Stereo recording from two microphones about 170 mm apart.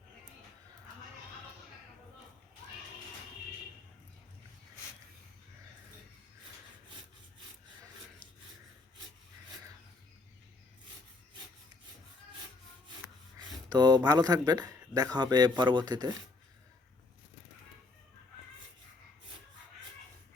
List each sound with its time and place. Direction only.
13.7 s speech: 25° right (ahead or behind)